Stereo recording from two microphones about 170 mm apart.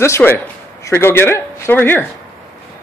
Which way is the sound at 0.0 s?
15° left (ahead or behind).